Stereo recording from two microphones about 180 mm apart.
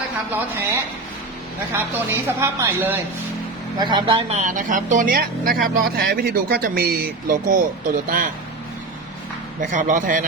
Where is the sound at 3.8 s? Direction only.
25° right (ahead or behind); by 8.2 s 50° right (ahead or behind).